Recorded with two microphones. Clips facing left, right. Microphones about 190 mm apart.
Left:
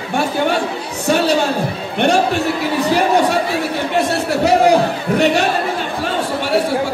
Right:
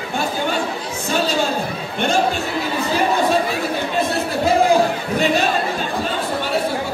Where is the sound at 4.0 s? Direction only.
75° left (ahead or behind).